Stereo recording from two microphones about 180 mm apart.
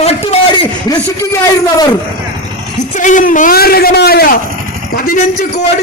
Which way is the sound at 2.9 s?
45° left (ahead or behind).